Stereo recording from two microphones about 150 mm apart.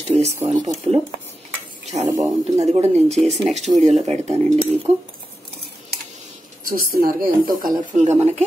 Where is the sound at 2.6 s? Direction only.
45° right (ahead or behind).